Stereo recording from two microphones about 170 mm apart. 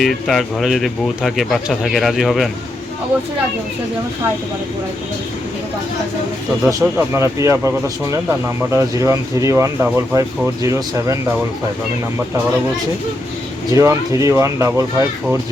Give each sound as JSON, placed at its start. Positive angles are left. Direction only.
{"t": 0.0, "sound": "speech", "side_deg": 0}
{"t": 6.7, "sound": "speech", "side_deg": -15}
{"t": 9.8, "sound": "speech", "side_deg": -5}
{"t": 10.2, "sound": "speech", "side_deg": -20}
{"t": 13.7, "sound": "speech", "side_deg": -20}